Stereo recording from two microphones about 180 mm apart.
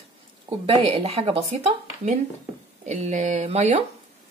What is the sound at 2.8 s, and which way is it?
Speech, 40° right (ahead or behind).